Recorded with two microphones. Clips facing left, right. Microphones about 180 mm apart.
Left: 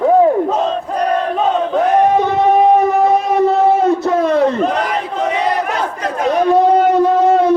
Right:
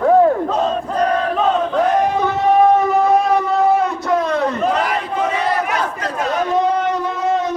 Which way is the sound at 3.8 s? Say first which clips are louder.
Left 5 dB; 25° left (ahead or behind).